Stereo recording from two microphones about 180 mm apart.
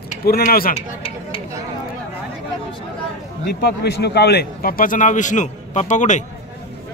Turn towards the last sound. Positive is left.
turn(degrees=40)  # may be behind; listen again after turning